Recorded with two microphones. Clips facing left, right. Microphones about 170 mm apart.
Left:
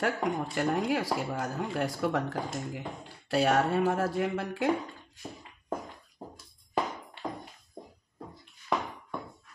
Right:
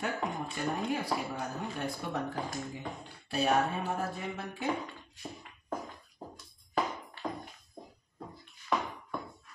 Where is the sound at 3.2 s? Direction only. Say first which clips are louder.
Left 3 dB; 90° left.